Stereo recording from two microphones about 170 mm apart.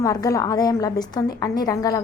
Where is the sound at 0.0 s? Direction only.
20° left (ahead or behind).